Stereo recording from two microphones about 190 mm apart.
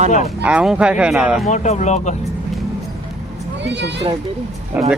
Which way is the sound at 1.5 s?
40° left (ahead or behind).